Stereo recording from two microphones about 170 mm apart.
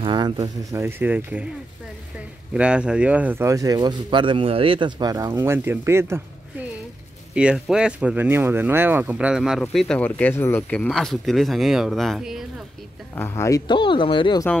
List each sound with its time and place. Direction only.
0.0 s speech: 30° right (ahead or behind); by 1.4 s 10° right (ahead or behind)
2.5 s speech: 5° right (ahead or behind)
7.3 s speech: 5° right (ahead or behind)
13.1 s speech: 15° left (ahead or behind)